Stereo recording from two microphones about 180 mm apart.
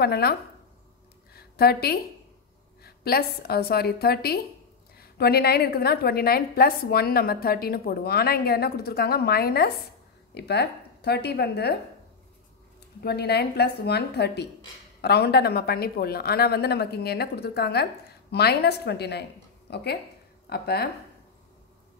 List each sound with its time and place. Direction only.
0.0 s a woman's voice: 60° left (ahead or behind)
1.3 s a sound: 60° left (ahead or behind)
2.8 s a woman's voice: 60° left (ahead or behind)
13.0 s a woman's voice: 65° left (ahead or behind)